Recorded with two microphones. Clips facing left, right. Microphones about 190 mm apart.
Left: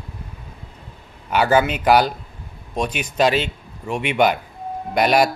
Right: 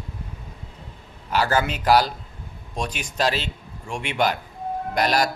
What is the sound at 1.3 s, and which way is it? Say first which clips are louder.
Speech: left 5 dB; 65° left (ahead or behind).